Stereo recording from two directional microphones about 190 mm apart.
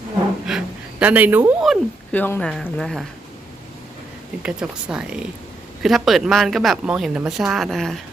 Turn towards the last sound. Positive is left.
turn(degrees=0)  # may be behind; listen again after turning